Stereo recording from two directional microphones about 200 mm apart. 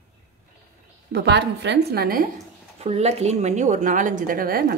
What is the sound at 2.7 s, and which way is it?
Speech, 35° right (ahead or behind).